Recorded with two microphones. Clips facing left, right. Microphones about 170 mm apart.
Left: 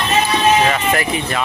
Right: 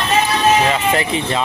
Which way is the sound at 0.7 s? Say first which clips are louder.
Right 1 dB; 25° right (ahead or behind).